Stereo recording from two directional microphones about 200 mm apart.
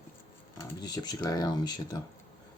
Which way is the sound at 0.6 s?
20° left (ahead or behind).